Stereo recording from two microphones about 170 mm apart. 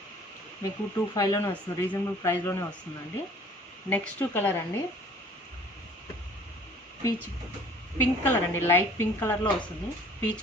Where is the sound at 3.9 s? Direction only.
10° left (ahead or behind).